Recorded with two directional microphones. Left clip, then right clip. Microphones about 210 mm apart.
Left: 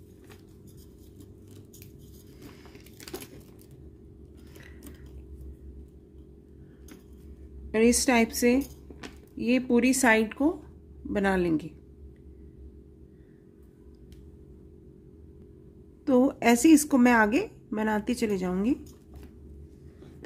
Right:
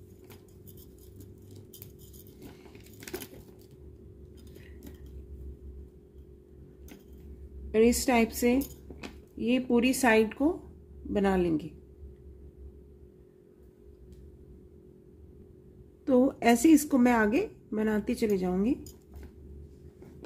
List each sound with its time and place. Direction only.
7.7 s speech: 20° left (ahead or behind)
16.1 s a woman's voice: 15° left (ahead or behind)